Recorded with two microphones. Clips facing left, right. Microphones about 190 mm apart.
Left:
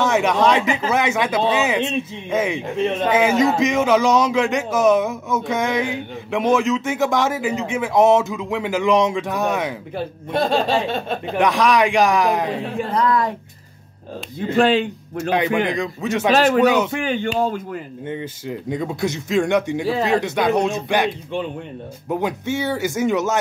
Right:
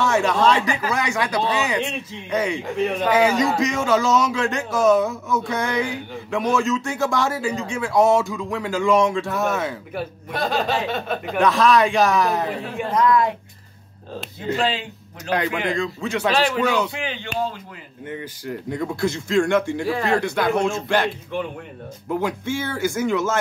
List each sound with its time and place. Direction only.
0.0 s speech: 20° left (ahead or behind)
10.3 s speech: 30° left (ahead or behind)
11.4 s a man's voice: 15° left (ahead or behind)
12.7 s speech: 35° left (ahead or behind)
14.6 s speech: 55° left (ahead or behind)
15.2 s speech: 20° left (ahead or behind)
16.3 s speech: 45° left (ahead or behind)
16.6 s speech: 20° left (ahead or behind)
16.9 s speech: 50° left (ahead or behind)
18.0 s speech: 25° left (ahead or behind)
22.1 s speech: 20° left (ahead or behind)